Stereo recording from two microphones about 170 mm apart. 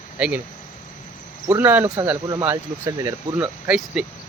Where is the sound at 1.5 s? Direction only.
10° right (ahead or behind).